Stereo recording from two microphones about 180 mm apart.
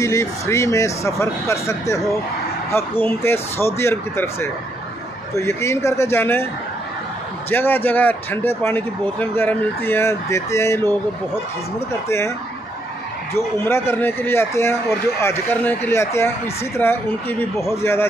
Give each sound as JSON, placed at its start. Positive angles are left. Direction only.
{"t": 0.0, "sound": "speech", "side_deg": 15}
{"t": 7.4, "sound": "speech", "side_deg": 10}
{"t": 13.7, "sound": "speech", "side_deg": 15}